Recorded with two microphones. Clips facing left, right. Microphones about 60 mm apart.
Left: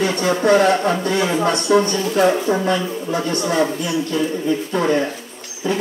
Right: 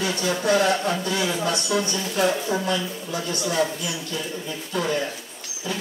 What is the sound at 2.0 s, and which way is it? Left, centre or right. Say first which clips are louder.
Speech: left 7 dB; left.